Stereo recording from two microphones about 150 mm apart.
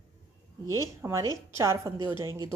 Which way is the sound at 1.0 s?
20° right (ahead or behind).